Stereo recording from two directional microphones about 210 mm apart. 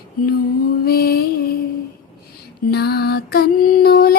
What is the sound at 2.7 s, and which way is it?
Music, 50° left (ahead or behind).